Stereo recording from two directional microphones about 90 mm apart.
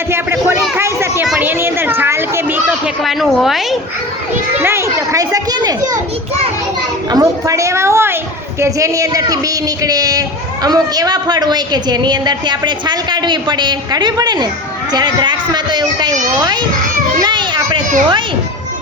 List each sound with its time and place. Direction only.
0.1 s a sound: 25° right (ahead or behind)
3.0 s a woman's voice: centre (ahead or behind)
4.6 s speech: 30° right (ahead or behind); by 6.0 s 45° right (ahead or behind)
7.1 s a woman's voice: 40° right (ahead or behind); by 18.2 s 60° right (ahead or behind)